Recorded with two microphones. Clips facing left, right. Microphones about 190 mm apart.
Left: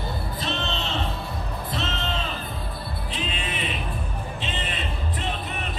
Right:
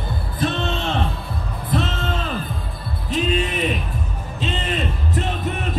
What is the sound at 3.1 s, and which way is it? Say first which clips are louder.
Music: right 12 dB; 45° right (ahead or behind).